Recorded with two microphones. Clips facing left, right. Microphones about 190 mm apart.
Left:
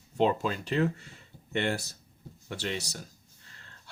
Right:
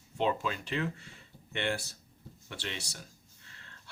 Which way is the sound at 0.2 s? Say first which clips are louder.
Left 5 dB; 40° left (ahead or behind).